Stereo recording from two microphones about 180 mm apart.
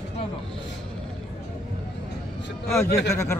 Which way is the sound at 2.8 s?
65° left (ahead or behind).